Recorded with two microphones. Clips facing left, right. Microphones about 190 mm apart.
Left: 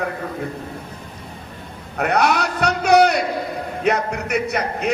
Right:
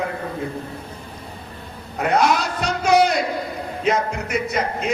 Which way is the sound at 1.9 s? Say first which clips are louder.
Even; 65° left (ahead or behind).